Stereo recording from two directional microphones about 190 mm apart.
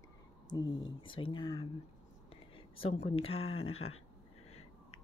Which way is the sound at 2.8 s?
30° left (ahead or behind).